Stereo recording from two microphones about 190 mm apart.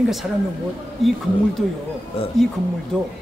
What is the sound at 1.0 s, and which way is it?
Speech, centre (ahead or behind).